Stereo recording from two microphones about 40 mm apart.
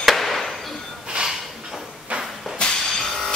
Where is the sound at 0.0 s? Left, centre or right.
Centre.